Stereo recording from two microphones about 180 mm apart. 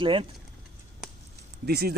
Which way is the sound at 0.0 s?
30° right (ahead or behind).